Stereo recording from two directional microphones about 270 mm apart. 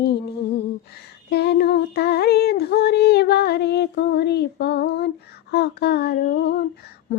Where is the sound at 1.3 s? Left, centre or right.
Left.